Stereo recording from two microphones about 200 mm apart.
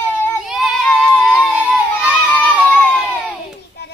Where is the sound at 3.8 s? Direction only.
55° left (ahead or behind).